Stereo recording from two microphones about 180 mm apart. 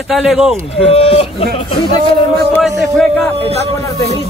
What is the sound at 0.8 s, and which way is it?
Speech, 30° left (ahead or behind).